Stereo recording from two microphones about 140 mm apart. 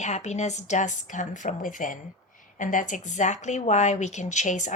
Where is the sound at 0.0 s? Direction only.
55° left (ahead or behind).